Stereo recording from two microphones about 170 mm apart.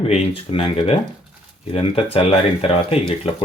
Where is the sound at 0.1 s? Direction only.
35° left (ahead or behind).